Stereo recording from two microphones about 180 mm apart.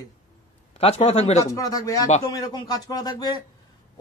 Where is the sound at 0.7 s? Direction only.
35° left (ahead or behind).